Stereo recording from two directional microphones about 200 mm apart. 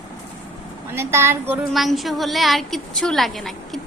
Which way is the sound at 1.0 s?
15° right (ahead or behind).